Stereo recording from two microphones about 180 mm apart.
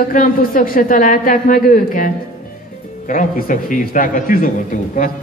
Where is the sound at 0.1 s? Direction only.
50° left (ahead or behind).